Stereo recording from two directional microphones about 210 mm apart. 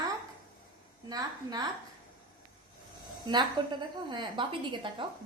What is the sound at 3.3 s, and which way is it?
A woman's voice, 20° right (ahead or behind).